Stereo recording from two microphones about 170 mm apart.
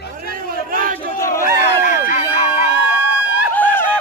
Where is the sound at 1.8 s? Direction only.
50° left (ahead or behind).